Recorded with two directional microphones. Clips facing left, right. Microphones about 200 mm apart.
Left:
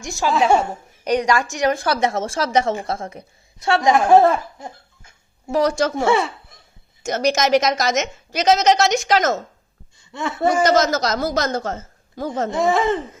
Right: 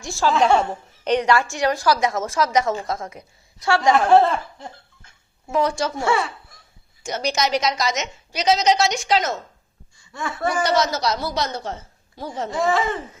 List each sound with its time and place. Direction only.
0.0 s a woman's voice: 20° left (ahead or behind)
1.7 s a woman's voice: 55° left (ahead or behind)
2.0 s a woman's voice: 30° left (ahead or behind); by 4.7 s 10° left (ahead or behind)
5.5 s a woman's voice: 40° left (ahead or behind)
6.1 s speech: 20° left (ahead or behind)
7.0 s a woman's voice: 45° left (ahead or behind)
10.1 s speech: 25° left (ahead or behind)
10.5 s a woman's voice: 45° left (ahead or behind)
12.5 s a woman's voice: 20° left (ahead or behind)